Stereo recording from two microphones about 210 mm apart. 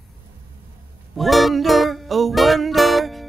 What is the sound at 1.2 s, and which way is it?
Music, centre (ahead or behind).